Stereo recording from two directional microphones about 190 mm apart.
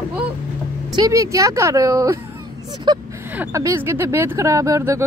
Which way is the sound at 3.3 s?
10° right (ahead or behind).